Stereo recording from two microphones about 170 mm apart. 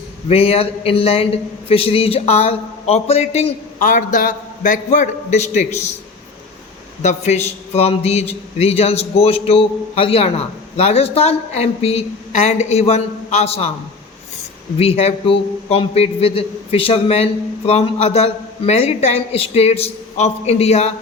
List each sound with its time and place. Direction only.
0.3 s a man's voice: 35° left (ahead or behind)
7.0 s a man's voice: 40° left (ahead or behind)
14.8 s a man's voice: 35° left (ahead or behind)